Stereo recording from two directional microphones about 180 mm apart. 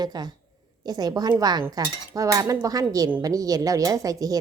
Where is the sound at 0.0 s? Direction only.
25° right (ahead or behind).